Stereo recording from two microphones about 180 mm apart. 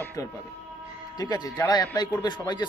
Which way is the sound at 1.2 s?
20° left (ahead or behind).